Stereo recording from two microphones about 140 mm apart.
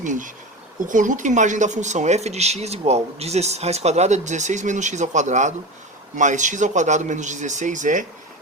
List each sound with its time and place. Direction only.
0.0 s speech: 65° right (ahead or behind)